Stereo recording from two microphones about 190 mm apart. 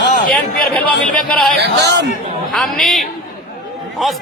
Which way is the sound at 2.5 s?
Centre (ahead or behind).